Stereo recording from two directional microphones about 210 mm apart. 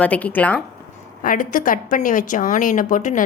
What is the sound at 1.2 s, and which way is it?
Speech, 40° left (ahead or behind).